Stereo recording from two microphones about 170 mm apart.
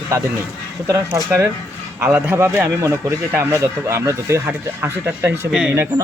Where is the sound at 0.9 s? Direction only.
15° right (ahead or behind).